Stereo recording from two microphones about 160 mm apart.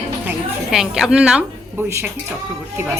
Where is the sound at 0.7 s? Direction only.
5° right (ahead or behind).